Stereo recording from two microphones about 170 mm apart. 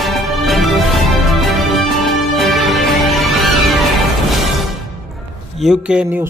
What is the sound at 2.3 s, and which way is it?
Music, centre (ahead or behind).